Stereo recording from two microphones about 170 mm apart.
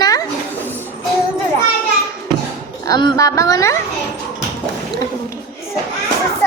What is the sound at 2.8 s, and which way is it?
Speech, 25° left (ahead or behind).